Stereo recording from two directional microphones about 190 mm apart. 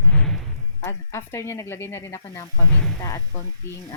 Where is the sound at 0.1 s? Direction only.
5° left (ahead or behind).